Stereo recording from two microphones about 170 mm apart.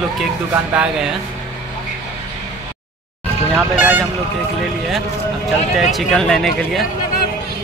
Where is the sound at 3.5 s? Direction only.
10° right (ahead or behind).